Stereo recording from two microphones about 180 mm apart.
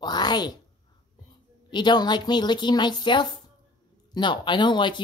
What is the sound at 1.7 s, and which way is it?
Speech, 25° left (ahead or behind).